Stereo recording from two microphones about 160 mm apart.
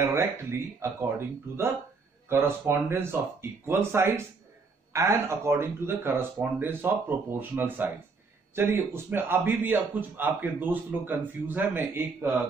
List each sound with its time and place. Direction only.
0.0 s speech: 15° right (ahead or behind)
2.2 s speech: 15° right (ahead or behind)